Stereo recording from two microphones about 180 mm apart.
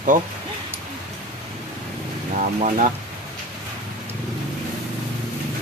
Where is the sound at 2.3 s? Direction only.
45° right (ahead or behind).